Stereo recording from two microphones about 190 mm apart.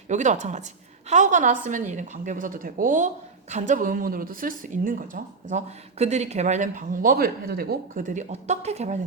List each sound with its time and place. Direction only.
0.1 s a woman's voice: 40° right (ahead or behind)